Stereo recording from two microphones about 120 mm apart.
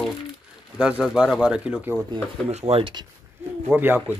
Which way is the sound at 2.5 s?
60° right (ahead or behind).